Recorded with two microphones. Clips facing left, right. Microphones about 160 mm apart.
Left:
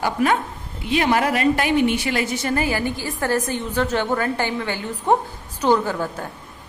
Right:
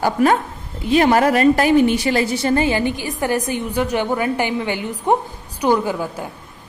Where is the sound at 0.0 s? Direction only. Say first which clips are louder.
Right 4 dB; 40° right (ahead or behind); by 6.2 s 10° right (ahead or behind).